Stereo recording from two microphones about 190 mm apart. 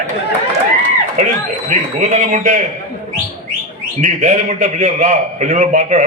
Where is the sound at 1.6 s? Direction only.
40° right (ahead or behind).